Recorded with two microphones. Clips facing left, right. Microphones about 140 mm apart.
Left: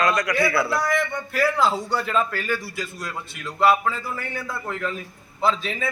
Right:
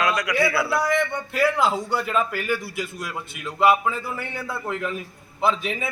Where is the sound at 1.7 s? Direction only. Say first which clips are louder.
Even; 5° right (ahead or behind).